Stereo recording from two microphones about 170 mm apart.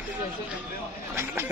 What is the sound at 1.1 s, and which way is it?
Speech, 15° right (ahead or behind).